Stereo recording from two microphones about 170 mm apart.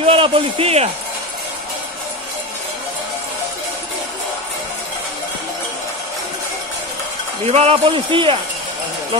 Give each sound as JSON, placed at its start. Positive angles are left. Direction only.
{"t": 0.0, "sound": "speech", "side_deg": -35}
{"t": 7.5, "sound": "a man's voice", "side_deg": -35}